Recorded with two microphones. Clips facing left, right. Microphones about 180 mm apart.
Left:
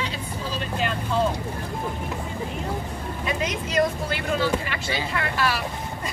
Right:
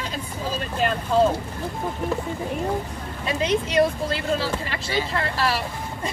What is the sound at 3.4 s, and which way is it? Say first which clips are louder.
Speech: right 5 dB; 30° right (ahead or behind).